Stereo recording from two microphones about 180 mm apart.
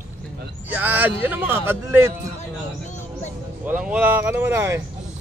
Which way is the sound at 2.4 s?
40° left (ahead or behind).